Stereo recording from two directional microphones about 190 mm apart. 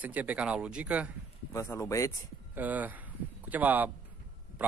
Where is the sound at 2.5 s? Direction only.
10° right (ahead or behind).